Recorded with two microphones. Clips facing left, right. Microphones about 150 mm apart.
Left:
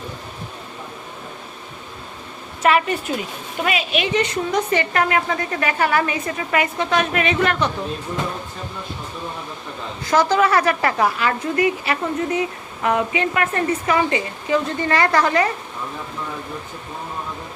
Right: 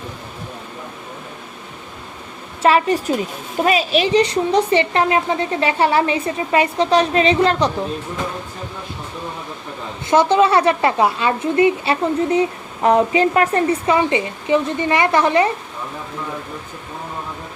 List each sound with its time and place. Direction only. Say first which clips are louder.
2.6 s a woman's voice: right 3 dB; 30° right (ahead or behind)
10.1 s speech: right 3 dB; 25° right (ahead or behind)